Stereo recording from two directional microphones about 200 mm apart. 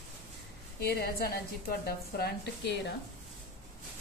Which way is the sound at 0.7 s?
50° left (ahead or behind).